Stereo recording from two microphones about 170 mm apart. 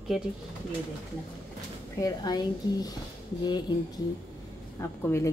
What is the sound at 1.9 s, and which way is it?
A woman's voice, 20° left (ahead or behind).